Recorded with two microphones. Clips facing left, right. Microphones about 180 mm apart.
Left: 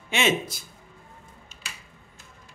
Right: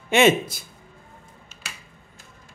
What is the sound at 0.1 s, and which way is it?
Speech, 55° right (ahead or behind).